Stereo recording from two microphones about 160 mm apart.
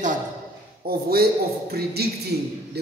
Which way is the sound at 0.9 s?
75° right (ahead or behind).